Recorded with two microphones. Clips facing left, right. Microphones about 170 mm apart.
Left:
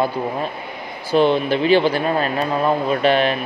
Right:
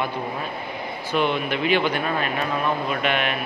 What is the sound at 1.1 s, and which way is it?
Speech, 35° left (ahead or behind).